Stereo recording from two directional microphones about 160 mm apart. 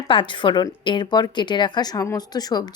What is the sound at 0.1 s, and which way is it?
Speech, 30° left (ahead or behind).